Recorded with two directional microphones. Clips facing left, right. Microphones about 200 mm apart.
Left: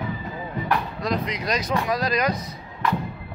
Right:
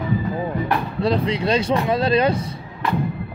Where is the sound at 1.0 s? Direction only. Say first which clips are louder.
Right 6 dB; 30° right (ahead or behind).